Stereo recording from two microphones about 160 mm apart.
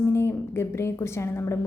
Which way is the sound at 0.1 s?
15° left (ahead or behind).